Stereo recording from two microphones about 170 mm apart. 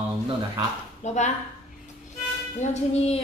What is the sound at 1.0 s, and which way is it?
Speech, 40° left (ahead or behind).